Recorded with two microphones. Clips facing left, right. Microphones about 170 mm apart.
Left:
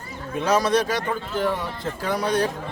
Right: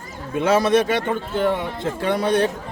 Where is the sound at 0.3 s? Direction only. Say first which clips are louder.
Right 3 dB; 25° right (ahead or behind).